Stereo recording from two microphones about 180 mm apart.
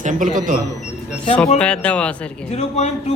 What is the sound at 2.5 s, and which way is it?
Speech, 40° left (ahead or behind).